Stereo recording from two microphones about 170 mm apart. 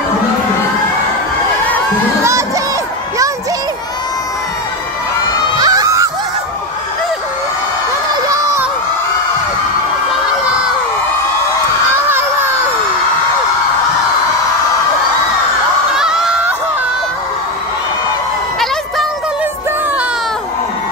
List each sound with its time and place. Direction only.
5.6 s screaming: 20° right (ahead or behind)
15.9 s crowd: 5° right (ahead or behind)